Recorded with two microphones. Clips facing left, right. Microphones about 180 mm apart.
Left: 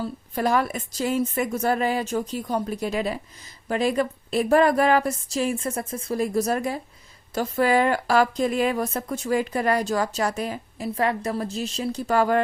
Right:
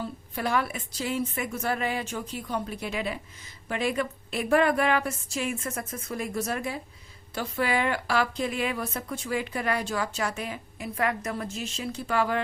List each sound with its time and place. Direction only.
0.3 s a woman's voice: 40° left (ahead or behind)